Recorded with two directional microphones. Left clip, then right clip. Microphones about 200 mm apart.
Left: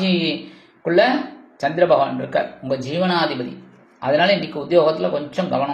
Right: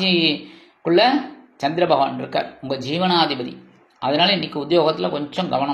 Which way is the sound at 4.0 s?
30° right (ahead or behind).